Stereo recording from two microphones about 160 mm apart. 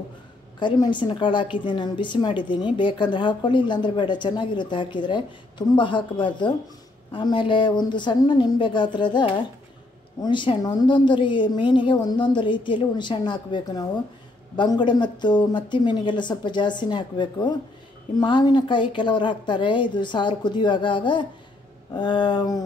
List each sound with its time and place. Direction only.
0.6 s a woman's voice: 30° left (ahead or behind)